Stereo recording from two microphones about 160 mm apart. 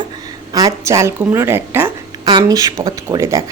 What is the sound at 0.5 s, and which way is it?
A woman's voice, 20° right (ahead or behind).